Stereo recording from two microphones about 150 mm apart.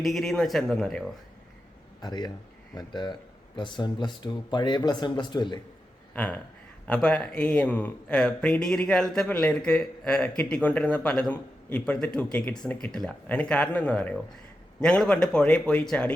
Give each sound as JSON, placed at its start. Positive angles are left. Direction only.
{"t": 0.0, "sound": "speech", "side_deg": 0}
{"t": 2.0, "sound": "speech", "side_deg": 30}
{"t": 6.1, "sound": "speech", "side_deg": 10}